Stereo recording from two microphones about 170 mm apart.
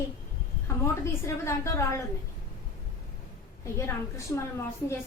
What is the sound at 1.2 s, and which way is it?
Speech, 15° left (ahead or behind).